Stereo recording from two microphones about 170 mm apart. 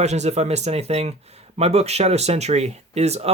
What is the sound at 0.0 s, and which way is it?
Speech, 40° right (ahead or behind).